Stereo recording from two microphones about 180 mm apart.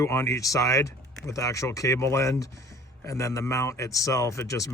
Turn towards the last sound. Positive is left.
turn(degrees=20)  # may be behind; listen again after turning